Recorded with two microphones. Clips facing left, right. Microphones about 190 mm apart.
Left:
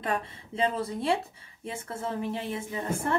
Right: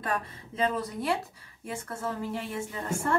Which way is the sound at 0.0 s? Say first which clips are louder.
Left 1 dB; 25° left (ahead or behind).